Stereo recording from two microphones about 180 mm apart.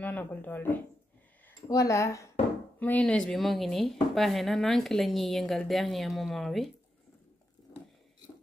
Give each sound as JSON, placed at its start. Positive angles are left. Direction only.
{"t": 0.0, "sound": "speech", "side_deg": 10}